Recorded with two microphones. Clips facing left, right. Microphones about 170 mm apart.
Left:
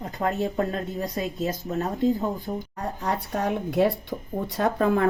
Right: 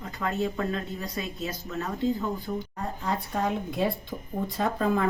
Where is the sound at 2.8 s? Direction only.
70° left (ahead or behind).